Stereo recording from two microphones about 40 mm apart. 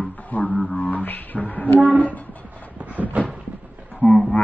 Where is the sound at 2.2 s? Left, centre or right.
Left.